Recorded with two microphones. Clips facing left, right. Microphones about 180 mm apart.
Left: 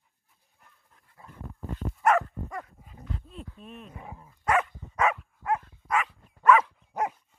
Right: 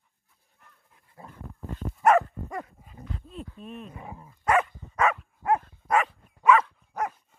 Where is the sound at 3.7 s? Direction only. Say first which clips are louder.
Right 3 dB; 40° right (ahead or behind).